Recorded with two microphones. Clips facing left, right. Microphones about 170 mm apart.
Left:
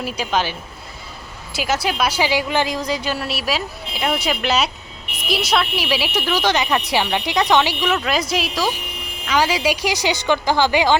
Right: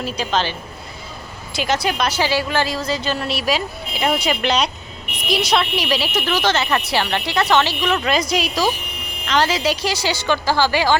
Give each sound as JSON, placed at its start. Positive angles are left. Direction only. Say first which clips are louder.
{"t": 0.0, "sound": "a woman's voice", "louder": "even", "side_deg": 10}
{"t": 1.5, "sound": "a woman's voice", "louder": "right 1 dB", "side_deg": 5}